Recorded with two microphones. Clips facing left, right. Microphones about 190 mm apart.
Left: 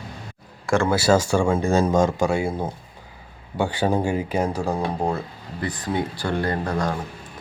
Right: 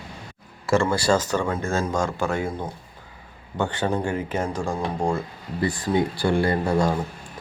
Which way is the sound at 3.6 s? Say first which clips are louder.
Left 3 dB; 10° left (ahead or behind).